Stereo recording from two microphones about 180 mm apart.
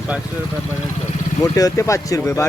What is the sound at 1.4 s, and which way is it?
Speech, 20° left (ahead or behind).